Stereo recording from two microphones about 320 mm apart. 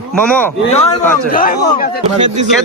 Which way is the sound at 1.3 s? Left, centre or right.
Left.